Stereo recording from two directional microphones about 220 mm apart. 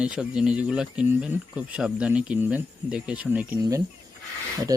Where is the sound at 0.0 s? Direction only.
5° right (ahead or behind).